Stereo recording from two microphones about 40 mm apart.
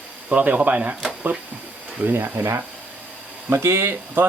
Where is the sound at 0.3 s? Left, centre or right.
Right.